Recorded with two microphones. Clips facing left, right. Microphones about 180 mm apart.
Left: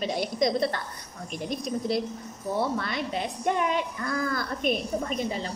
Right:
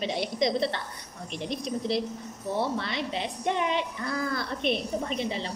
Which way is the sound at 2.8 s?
50° left (ahead or behind).